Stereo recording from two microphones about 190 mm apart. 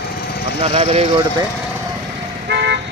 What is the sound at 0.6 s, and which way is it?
Speech, 30° right (ahead or behind).